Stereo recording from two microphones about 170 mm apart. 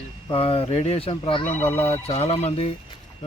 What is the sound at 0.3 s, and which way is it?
Speech, 35° left (ahead or behind).